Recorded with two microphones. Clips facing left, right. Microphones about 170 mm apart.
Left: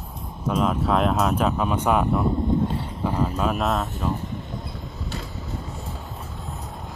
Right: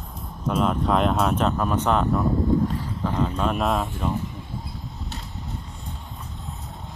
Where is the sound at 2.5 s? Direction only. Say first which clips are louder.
Right 2 dB; 20° left (ahead or behind).